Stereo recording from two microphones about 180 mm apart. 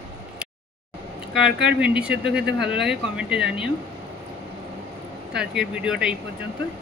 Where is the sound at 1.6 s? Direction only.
5° right (ahead or behind).